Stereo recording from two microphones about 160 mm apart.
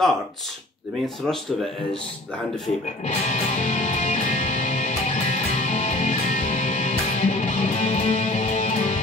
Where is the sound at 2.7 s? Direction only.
45° left (ahead or behind).